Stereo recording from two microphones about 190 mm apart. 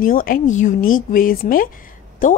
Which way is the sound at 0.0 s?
50° left (ahead or behind).